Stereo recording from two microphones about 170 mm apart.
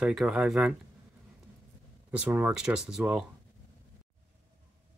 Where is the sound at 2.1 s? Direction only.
10° right (ahead or behind).